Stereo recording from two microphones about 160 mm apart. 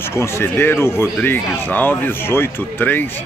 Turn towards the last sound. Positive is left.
turn(degrees=10)  # may be behind; listen again after turning